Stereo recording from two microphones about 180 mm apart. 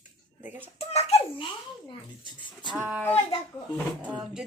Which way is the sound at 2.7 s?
5° right (ahead or behind).